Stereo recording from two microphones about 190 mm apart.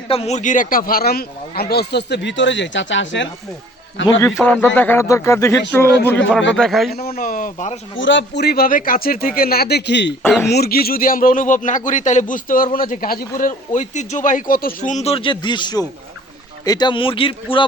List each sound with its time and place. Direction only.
0.1 s speech: 35° left (ahead or behind); by 3.2 s 75° left (ahead or behind)
4.2 s a man's voice: 10° left (ahead or behind)
6.9 s a man's voice: 50° left (ahead or behind)
7.9 s a man's voice: 75° left (ahead or behind)
10.5 s a man's voice: 55° left (ahead or behind); by 17.7 s 25° left (ahead or behind)